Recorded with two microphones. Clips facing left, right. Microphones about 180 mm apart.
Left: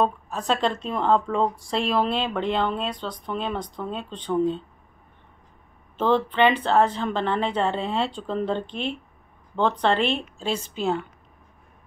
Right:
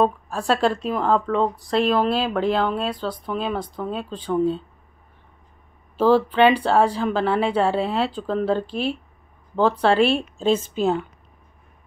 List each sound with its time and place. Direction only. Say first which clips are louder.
0.0 s a woman's voice: right 3 dB; 5° right (ahead or behind)
5.9 s speech: right 4 dB; 10° right (ahead or behind)
10.1 s a woman's voice: right 7 dB; 15° left (ahead or behind)
10.7 s speech: right 4 dB; 15° right (ahead or behind)